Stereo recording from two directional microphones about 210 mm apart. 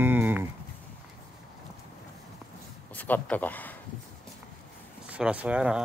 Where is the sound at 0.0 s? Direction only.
10° right (ahead or behind).